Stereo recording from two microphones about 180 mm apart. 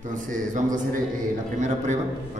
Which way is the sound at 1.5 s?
40° right (ahead or behind).